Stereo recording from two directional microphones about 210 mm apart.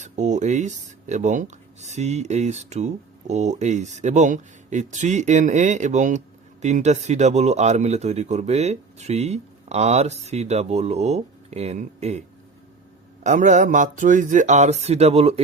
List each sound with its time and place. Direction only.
0.0 s speech: 35° right (ahead or behind)
13.2 s speech: 35° right (ahead or behind)